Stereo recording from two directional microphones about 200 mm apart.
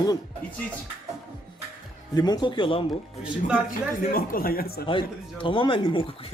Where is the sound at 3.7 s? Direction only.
45° left (ahead or behind).